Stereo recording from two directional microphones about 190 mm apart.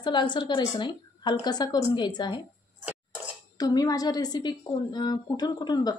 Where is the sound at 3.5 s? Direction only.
20° left (ahead or behind).